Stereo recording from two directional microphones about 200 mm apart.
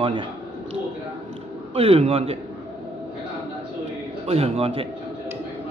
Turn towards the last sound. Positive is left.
turn(degrees=-30)  # may be behind; listen again after turning